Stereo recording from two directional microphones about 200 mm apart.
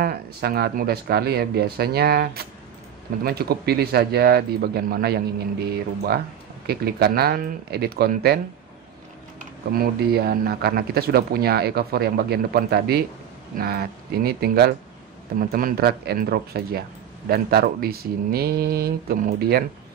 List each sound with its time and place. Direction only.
0.0 s speech: 50° right (ahead or behind)
6.7 s speech: 50° right (ahead or behind)
9.7 s speech: 50° right (ahead or behind)